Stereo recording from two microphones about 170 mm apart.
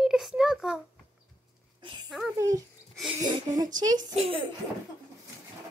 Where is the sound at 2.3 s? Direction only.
20° right (ahead or behind).